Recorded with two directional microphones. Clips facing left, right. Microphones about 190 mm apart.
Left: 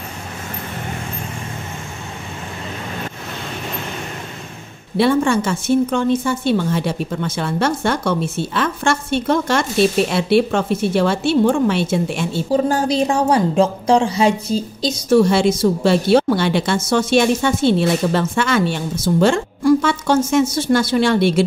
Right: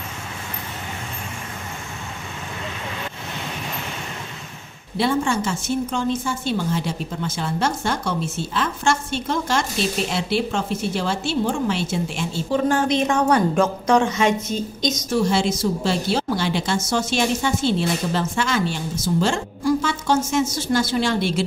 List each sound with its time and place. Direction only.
4.9 s a woman's voice: 60° left (ahead or behind)
12.4 s a woman's voice: 35° left (ahead or behind)
15.0 s a woman's voice: 60° left (ahead or behind)